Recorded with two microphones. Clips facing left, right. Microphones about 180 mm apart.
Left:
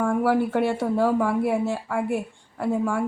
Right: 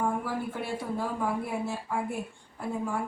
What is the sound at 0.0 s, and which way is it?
A woman's voice, 80° left.